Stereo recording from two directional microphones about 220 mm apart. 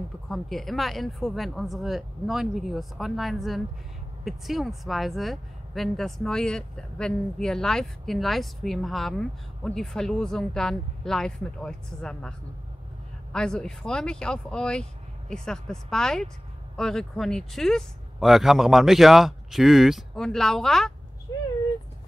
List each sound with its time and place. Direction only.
0.3 s a woman's voice: centre (ahead or behind)